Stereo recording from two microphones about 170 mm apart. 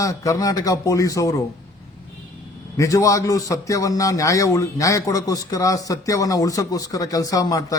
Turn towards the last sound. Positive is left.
turn(degrees=20)  # may be behind; listen again after turning